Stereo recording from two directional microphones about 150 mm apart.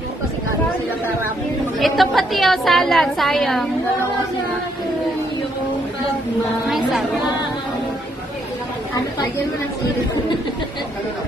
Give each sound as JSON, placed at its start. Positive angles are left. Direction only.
{"t": 1.8, "sound": "a woman's voice", "side_deg": 0}
{"t": 6.7, "sound": "a woman's voice", "side_deg": 0}